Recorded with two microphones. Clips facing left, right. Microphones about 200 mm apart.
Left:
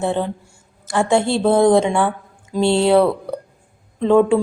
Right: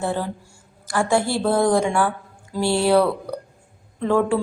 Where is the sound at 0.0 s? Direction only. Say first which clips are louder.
Left 4 dB; 20° left (ahead or behind).